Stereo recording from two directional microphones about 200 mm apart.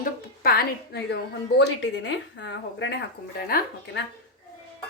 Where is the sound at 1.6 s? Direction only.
65° left (ahead or behind).